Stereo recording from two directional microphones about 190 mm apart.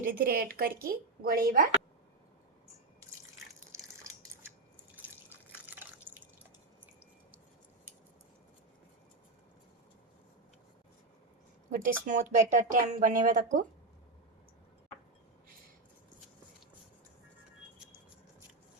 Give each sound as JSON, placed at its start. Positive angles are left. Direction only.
{"t": 0.1, "sound": "speech", "side_deg": -50}
{"t": 4.0, "sound": "scissors", "side_deg": -15}
{"t": 4.9, "sound": "drip", "side_deg": -10}
{"t": 11.7, "sound": "speech", "side_deg": -45}